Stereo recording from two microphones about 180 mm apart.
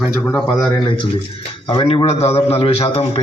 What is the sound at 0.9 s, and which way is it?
A man's voice, 25° left (ahead or behind).